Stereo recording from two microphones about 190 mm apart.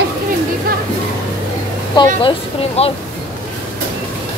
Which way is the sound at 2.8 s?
35° left (ahead or behind).